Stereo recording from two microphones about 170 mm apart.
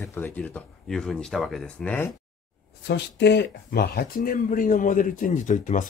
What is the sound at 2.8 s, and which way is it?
Speech, 90° left.